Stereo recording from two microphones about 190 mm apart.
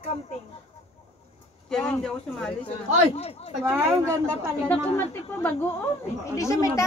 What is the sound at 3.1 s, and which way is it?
Speech, 35° left (ahead or behind).